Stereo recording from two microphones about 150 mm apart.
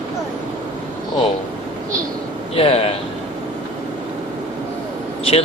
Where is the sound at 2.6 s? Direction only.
40° left (ahead or behind).